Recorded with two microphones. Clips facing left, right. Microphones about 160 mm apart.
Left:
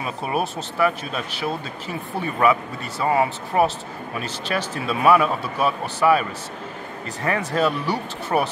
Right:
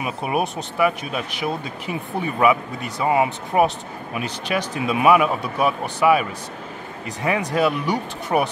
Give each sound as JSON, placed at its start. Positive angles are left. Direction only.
{"t": 0.0, "sound": "speech", "side_deg": -15}